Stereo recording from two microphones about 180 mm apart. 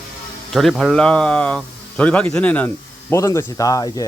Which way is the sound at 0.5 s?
Centre (ahead or behind).